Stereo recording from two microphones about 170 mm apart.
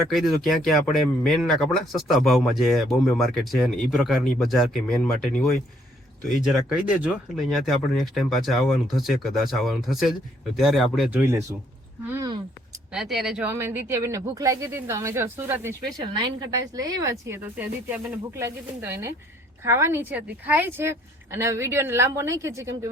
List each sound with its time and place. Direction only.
0.1 s speech: centre (ahead or behind)
12.0 s a sound: 15° right (ahead or behind)
12.9 s speech: centre (ahead or behind)